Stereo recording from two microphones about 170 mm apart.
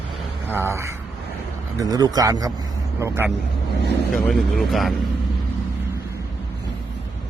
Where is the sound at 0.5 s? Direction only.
15° right (ahead or behind).